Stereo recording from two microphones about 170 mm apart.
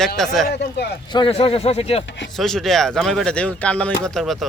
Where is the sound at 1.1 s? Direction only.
30° left (ahead or behind).